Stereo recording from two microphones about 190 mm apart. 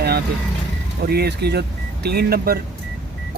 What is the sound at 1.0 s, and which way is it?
Speech, 55° right (ahead or behind).